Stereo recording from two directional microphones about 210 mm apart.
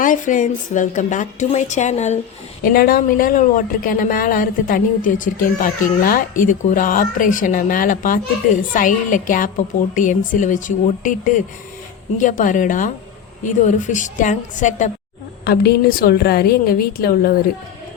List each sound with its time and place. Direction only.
0.0 s speech: 40° left (ahead or behind)
2.6 s speech: 45° left (ahead or behind)
15.4 s a woman's voice: 45° left (ahead or behind)